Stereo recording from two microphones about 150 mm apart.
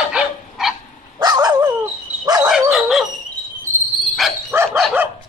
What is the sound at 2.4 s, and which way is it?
Dog, 5° right (ahead or behind).